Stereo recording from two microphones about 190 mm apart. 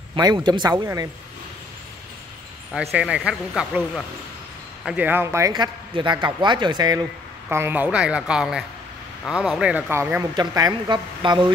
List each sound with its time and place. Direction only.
0.1 s speech: 20° right (ahead or behind)
2.7 s speech: 5° right (ahead or behind); by 7.1 s 20° right (ahead or behind)
7.4 s speech: 10° right (ahead or behind)